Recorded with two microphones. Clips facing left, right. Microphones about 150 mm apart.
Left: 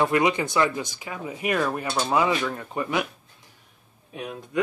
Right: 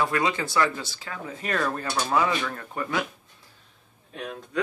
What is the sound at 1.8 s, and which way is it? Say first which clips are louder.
Speech: left 1 dB; 25° left (ahead or behind).